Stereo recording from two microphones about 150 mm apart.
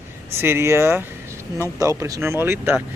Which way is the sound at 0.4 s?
15° right (ahead or behind).